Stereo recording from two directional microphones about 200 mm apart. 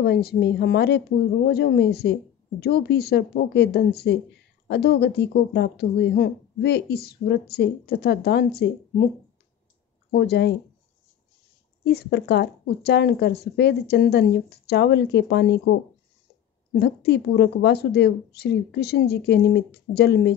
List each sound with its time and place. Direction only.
0.0 s a woman's voice: 50° left (ahead or behind)
10.1 s a woman's voice: 55° left (ahead or behind)
11.8 s a woman's voice: 55° left (ahead or behind)
16.7 s a woman's voice: 55° left (ahead or behind)